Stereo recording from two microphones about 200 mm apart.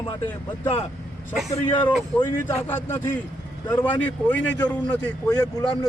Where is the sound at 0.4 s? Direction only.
25° left (ahead or behind).